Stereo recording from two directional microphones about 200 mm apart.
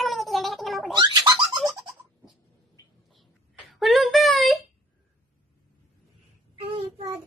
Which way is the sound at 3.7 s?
Centre (ahead or behind).